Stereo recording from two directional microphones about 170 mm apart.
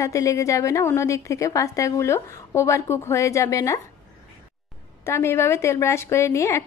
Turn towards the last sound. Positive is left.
turn(degrees=15)  # may be behind; listen again after turning